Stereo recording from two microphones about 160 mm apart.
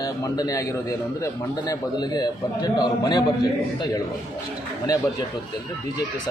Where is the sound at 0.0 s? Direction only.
25° left (ahead or behind).